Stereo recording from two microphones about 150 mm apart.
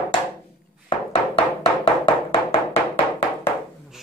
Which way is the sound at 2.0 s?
40° left (ahead or behind).